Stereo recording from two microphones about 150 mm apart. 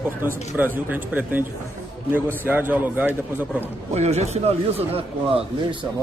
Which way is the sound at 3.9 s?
45° right (ahead or behind).